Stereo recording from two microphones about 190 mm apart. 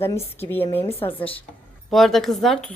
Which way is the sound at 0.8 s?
30° left (ahead or behind).